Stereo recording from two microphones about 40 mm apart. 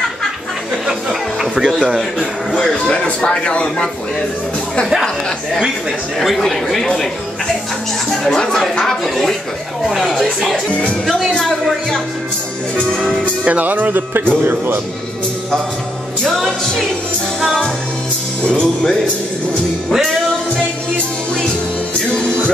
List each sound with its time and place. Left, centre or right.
1.6 s a man's voice: centre
2.9 s speech: left
6.2 s a man's voice: centre
8.1 s a man's voice: centre
8.4 s a man's voice: centre
13.4 s speech: right
14.4 s a man's voice: right
16.3 s a man's voice: centre